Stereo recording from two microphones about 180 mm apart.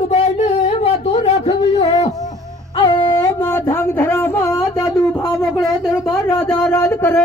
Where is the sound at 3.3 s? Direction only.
10° left (ahead or behind).